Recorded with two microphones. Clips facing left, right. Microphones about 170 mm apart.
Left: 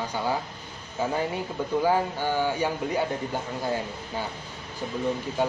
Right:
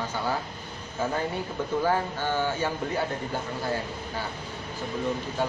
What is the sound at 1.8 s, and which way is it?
Speech, 15° left (ahead or behind).